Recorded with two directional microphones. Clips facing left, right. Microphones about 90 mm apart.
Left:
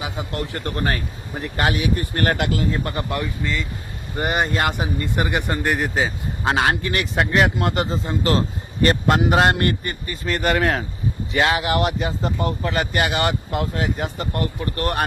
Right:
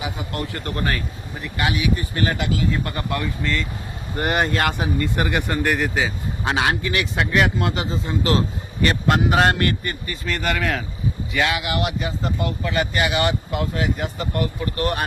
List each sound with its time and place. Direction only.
0.0 s speech: 25° left (ahead or behind); by 2.6 s 60° left (ahead or behind)
2.6 s speech: 30° left (ahead or behind); by 3.6 s 15° left (ahead or behind)
4.2 s speech: 5° left (ahead or behind)
4.9 s speech: 20° left (ahead or behind)
5.8 s speech: 35° left (ahead or behind)